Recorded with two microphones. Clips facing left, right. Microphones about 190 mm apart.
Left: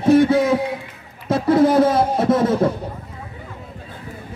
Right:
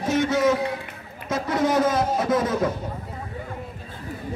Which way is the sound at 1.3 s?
30° left (ahead or behind).